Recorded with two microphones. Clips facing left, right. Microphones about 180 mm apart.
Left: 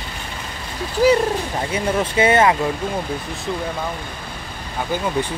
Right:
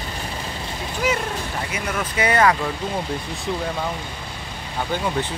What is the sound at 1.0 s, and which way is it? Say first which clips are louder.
Speech: left 9 dB; 35° left (ahead or behind).